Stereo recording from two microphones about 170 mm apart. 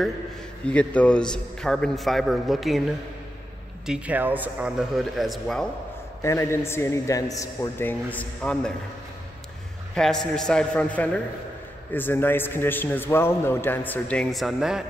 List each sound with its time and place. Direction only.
0.7 s a man's voice: 5° left (ahead or behind)
3.8 s a man's voice: 5° right (ahead or behind)
6.2 s a man's voice: 15° left (ahead or behind)
9.9 s a man's voice: 5° left (ahead or behind)